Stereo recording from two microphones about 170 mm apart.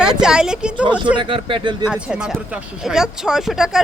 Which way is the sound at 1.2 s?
30° right (ahead or behind).